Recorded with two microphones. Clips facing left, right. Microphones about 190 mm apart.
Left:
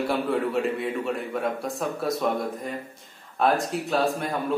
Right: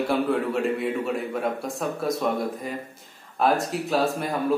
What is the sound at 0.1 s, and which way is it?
Speech, centre (ahead or behind).